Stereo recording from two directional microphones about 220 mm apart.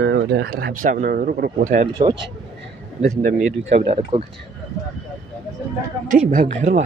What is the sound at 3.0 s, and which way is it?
Speech, 40° right (ahead or behind).